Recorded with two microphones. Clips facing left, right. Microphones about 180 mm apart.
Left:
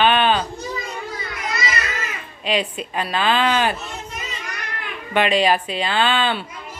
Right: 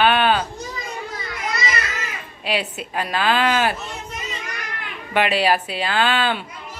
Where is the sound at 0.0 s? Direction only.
10° right (ahead or behind).